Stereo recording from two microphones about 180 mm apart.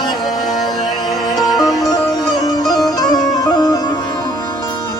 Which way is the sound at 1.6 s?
Centre (ahead or behind).